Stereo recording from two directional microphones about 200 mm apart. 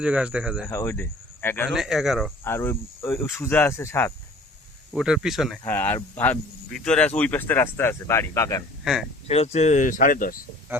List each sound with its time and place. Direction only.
0.0 s speech: 5° right (ahead or behind)
0.7 s speech: 15° left (ahead or behind)
1.7 s speech: centre (ahead or behind)
2.4 s speech: 10° left (ahead or behind)
4.9 s speech: 5° right (ahead or behind)
5.6 s speech: 10° left (ahead or behind)
8.8 s speech: centre (ahead or behind)
9.2 s speech: 30° left (ahead or behind)